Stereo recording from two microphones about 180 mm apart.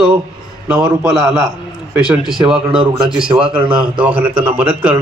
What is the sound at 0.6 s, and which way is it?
A man's voice, 5° right (ahead or behind).